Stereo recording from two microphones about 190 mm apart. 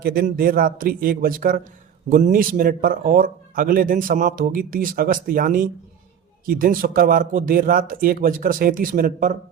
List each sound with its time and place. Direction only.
0.0 s speech: 55° right (ahead or behind)